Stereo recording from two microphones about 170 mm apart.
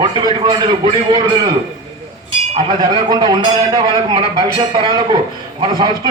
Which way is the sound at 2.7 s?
25° right (ahead or behind).